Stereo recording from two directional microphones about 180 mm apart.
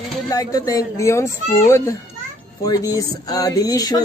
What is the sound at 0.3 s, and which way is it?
Speech, 20° left (ahead or behind).